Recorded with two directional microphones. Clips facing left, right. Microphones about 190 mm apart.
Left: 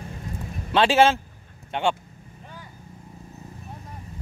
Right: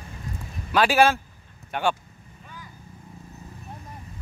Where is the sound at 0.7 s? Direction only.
25° left (ahead or behind).